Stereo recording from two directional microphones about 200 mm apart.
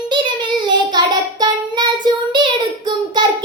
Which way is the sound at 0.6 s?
20° right (ahead or behind).